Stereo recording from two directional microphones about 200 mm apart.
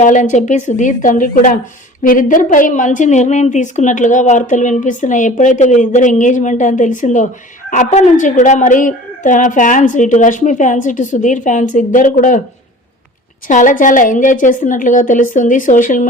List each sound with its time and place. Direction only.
0.0 s a woman's voice: 40° left (ahead or behind)
13.5 s a woman's voice: 40° left (ahead or behind)